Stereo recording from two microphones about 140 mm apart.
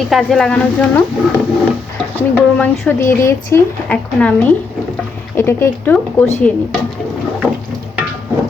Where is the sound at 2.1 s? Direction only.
10° left (ahead or behind).